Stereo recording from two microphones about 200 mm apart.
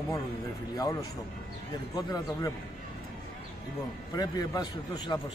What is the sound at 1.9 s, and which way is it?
Speech, 20° left (ahead or behind).